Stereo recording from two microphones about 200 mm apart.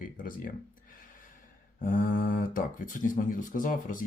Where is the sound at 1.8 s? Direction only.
40° left (ahead or behind).